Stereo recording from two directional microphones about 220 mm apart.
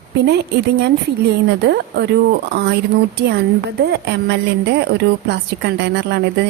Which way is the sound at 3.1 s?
50° right (ahead or behind).